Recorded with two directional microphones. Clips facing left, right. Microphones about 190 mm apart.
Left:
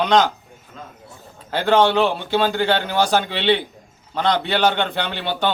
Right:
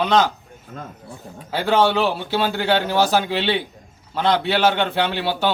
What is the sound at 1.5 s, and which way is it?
A man's voice, 5° right (ahead or behind).